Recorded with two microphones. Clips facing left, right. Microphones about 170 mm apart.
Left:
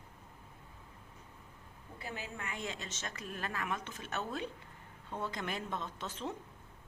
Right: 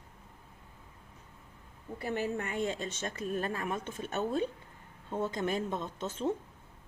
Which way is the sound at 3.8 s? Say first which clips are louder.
Right 5 dB; 45° right (ahead or behind).